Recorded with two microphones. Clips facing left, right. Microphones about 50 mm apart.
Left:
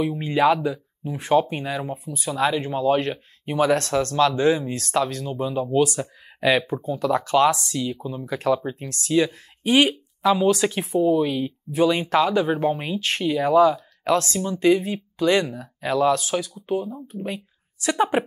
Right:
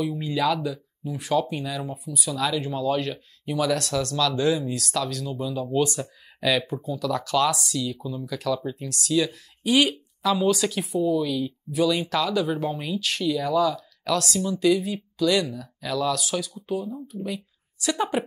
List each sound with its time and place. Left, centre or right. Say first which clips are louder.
0.0 s speech: left 5 dB; left